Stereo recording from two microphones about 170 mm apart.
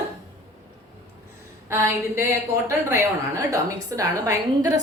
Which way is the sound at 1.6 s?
15° right (ahead or behind).